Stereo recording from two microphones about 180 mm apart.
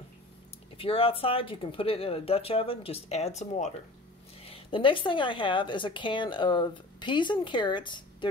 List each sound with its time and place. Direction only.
0.7 s speech: 30° left (ahead or behind)
4.5 s a woman's voice: 30° left (ahead or behind)